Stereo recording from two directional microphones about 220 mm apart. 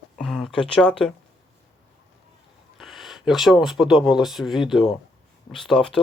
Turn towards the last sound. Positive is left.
turn(degrees=5)  # may be behind; listen again after turning